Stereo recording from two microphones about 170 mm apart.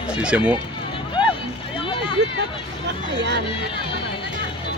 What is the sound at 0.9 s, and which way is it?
Music, 30° left (ahead or behind).